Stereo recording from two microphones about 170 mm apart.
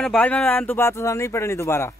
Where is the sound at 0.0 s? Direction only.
5° left (ahead or behind).